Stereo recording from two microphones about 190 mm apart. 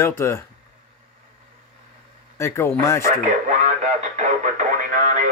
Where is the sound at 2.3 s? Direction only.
15° left (ahead or behind).